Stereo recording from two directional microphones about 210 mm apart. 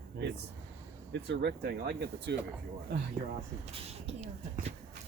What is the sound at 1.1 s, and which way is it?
Speech, 55° right (ahead or behind).